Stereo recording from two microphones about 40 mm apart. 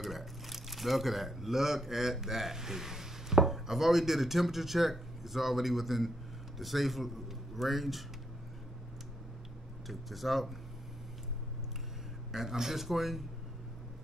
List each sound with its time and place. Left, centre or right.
0.0 s a man's voice: centre
9.8 s speech: centre
12.3 s speech: centre